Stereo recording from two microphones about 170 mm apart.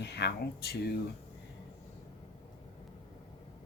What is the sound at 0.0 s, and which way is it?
Speech, 75° left (ahead or behind).